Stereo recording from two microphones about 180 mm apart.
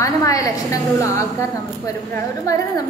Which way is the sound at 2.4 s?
20° left (ahead or behind).